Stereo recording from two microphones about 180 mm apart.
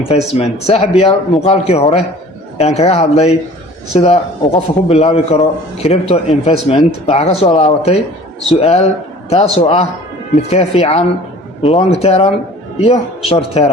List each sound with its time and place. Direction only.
0.1 s a man's voice: 35° left (ahead or behind)